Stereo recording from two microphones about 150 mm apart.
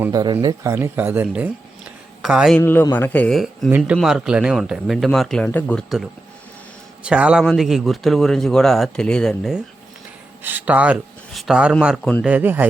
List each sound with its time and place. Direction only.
0.1 s speech: 25° right (ahead or behind); by 2.6 s 5° right (ahead or behind)
2.6 s a man's voice: 15° left (ahead or behind)
3.3 s speech: centre (ahead or behind)
10.4 s speech: 10° right (ahead or behind)